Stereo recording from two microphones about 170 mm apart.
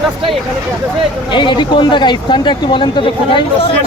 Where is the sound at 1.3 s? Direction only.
30° left (ahead or behind).